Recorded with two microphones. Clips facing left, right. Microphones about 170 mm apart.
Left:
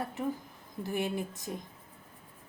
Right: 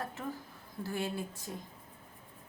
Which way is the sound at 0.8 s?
15° left (ahead or behind).